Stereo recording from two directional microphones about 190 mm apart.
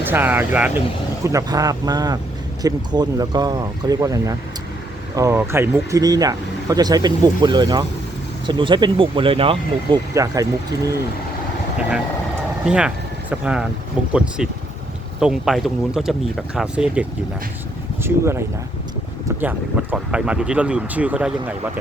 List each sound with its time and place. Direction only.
0.0 s speech: 10° right (ahead or behind); by 10.0 s 30° right (ahead or behind)
10.2 s speech: 20° right (ahead or behind)
12.6 s speech: 5° right (ahead or behind)
15.2 s speech: centre (ahead or behind)